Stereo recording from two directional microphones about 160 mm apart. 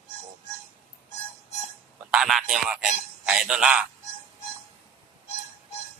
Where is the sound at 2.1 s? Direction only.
Centre (ahead or behind).